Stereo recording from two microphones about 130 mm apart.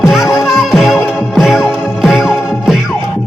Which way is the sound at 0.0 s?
Centre (ahead or behind).